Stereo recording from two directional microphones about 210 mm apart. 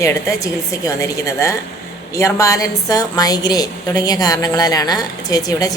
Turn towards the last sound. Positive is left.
turn(degrees=15)  # may be behind; listen again after turning